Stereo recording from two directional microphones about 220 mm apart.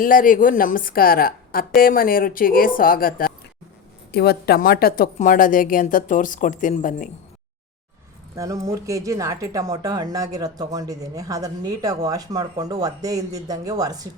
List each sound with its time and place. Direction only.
0.0 s a woman's voice: 40° left (ahead or behind)
8.4 s speech: 15° right (ahead or behind)